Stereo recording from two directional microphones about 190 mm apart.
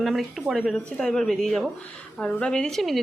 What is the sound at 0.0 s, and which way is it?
Speech, centre (ahead or behind).